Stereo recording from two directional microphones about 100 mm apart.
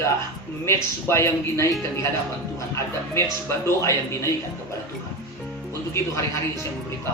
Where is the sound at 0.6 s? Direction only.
25° left (ahead or behind).